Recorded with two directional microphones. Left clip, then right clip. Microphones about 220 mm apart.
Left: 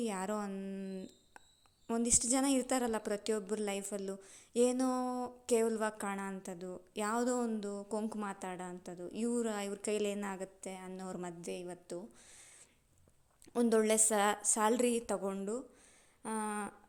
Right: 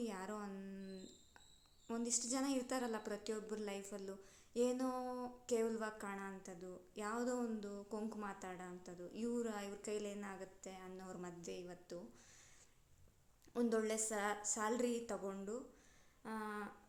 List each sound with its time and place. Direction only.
0.0 s a sound: 35° left (ahead or behind)
1.9 s a woman's voice: 35° left (ahead or behind)
13.5 s a woman's voice: 35° left (ahead or behind)